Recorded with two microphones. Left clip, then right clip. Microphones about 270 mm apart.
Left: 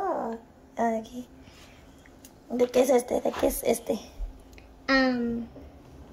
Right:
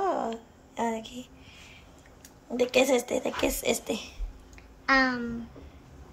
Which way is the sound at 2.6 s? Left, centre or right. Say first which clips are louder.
Left 2 dB; centre.